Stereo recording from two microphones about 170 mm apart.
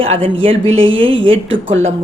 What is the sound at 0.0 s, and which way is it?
Speech, 35° right (ahead or behind).